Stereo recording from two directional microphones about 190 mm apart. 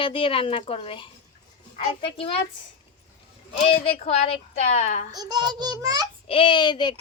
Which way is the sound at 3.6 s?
30° left (ahead or behind).